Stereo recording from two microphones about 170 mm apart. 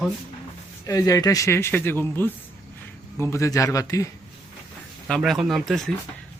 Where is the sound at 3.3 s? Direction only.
20° left (ahead or behind).